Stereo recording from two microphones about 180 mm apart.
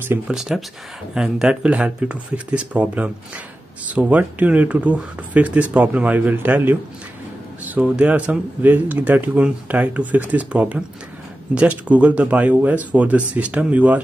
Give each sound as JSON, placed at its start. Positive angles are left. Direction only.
{"t": 0.1, "sound": "speech", "side_deg": -5}